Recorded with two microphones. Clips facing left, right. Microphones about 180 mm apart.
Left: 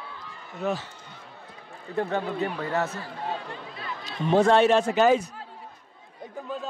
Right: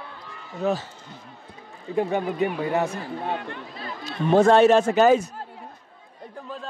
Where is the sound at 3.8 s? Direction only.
45° right (ahead or behind).